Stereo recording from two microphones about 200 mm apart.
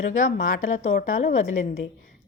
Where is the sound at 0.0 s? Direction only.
40° left (ahead or behind).